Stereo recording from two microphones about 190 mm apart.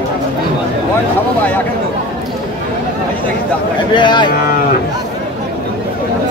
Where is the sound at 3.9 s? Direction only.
25° left (ahead or behind).